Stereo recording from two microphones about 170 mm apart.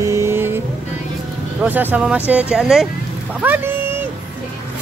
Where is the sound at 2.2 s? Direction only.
10° right (ahead or behind).